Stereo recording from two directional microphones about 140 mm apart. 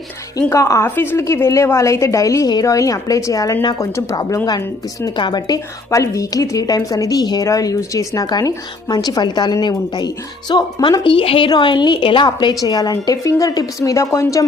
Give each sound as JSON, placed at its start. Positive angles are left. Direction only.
{"t": 0.3, "sound": "a woman's voice", "side_deg": 25}